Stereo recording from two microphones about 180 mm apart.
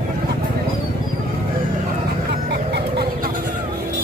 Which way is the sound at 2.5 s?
65° right (ahead or behind).